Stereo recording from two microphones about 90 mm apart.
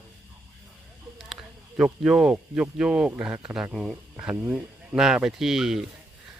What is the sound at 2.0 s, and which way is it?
Speech, 5° right (ahead or behind).